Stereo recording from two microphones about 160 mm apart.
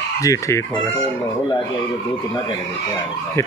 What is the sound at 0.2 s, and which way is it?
Speech, 20° left (ahead or behind).